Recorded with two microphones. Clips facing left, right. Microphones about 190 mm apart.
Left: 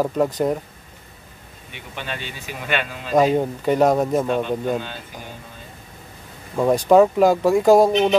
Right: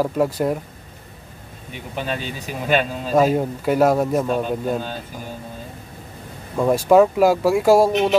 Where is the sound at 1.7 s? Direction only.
40° right (ahead or behind).